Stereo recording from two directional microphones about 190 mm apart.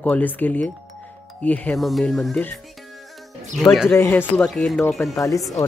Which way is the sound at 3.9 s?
10° left (ahead or behind).